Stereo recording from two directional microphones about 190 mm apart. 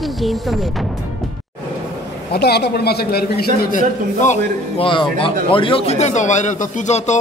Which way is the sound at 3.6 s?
45° left (ahead or behind).